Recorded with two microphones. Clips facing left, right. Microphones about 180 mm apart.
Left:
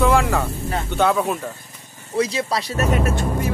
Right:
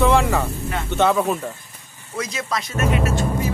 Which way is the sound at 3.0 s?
60° left (ahead or behind).